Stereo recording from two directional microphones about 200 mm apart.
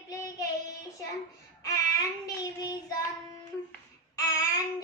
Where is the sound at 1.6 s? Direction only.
20° left (ahead or behind).